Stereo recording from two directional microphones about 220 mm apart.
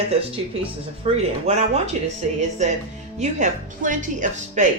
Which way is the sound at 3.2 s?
35° right (ahead or behind).